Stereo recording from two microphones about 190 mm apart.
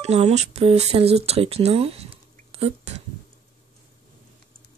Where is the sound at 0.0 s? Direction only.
35° right (ahead or behind).